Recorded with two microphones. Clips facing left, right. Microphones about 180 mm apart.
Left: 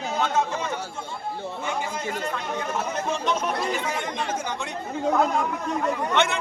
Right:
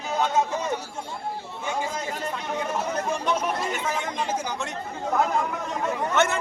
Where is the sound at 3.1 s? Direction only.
10° right (ahead or behind).